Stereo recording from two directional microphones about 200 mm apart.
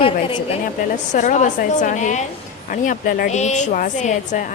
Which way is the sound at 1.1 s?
35° left (ahead or behind).